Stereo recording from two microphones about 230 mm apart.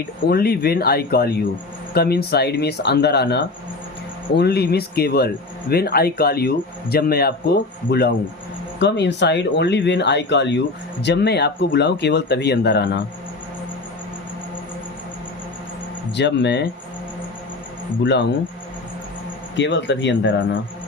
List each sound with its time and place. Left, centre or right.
0.3 s speech: left
16.1 s speech: left
18.0 s speech: left
19.5 s speech: left